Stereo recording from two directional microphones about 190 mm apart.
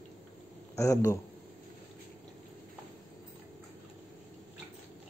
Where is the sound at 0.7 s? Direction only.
15° left (ahead or behind).